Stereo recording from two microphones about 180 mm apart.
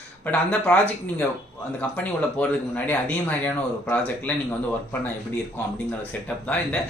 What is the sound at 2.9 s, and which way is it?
A man's voice, 10° left (ahead or behind).